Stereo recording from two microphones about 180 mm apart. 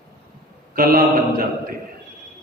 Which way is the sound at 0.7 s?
55° right (ahead or behind).